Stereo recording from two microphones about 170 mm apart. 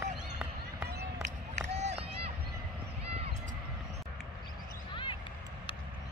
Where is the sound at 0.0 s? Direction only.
10° right (ahead or behind).